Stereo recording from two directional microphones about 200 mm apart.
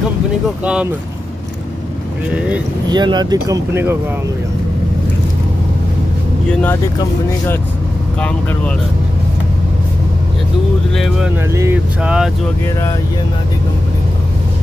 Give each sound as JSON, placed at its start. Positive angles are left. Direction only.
{"t": 2.3, "sound": "vehicle", "side_deg": -5}
{"t": 2.9, "sound": "speech", "side_deg": -20}
{"t": 6.5, "sound": "speech", "side_deg": 10}
{"t": 11.5, "sound": "vehicle", "side_deg": -10}